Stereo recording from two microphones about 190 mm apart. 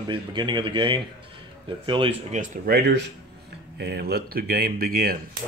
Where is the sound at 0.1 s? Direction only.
25° right (ahead or behind).